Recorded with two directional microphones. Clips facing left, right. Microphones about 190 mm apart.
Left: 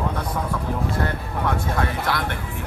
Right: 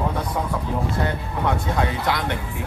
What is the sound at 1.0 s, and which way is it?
Speech, 20° right (ahead or behind).